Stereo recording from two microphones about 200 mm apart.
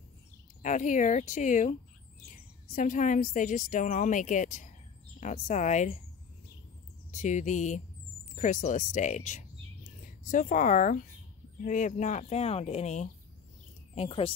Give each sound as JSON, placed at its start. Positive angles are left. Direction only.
{"t": 0.6, "sound": "speech", "side_deg": 40}
{"t": 7.1, "sound": "a woman's voice", "side_deg": 35}